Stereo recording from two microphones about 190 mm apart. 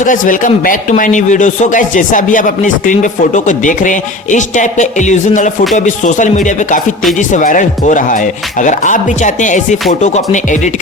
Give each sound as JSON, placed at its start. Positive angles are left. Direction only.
{"t": 0.0, "sound": "speech", "side_deg": 45}